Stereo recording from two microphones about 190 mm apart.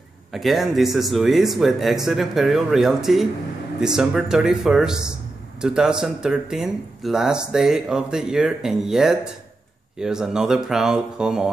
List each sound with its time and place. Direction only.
0.3 s speech: centre (ahead or behind)